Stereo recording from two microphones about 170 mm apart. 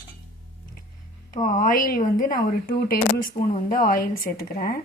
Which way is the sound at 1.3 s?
50° left (ahead or behind).